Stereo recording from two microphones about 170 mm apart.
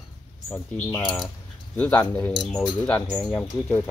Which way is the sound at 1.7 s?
10° left (ahead or behind).